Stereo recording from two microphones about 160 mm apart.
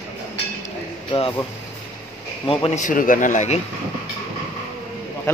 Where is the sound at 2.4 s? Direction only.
35° left (ahead or behind).